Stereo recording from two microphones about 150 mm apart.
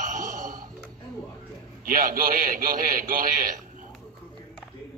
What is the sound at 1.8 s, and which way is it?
A man's voice, 70° right (ahead or behind).